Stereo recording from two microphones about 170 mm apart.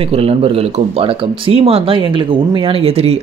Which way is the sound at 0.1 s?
35° right (ahead or behind).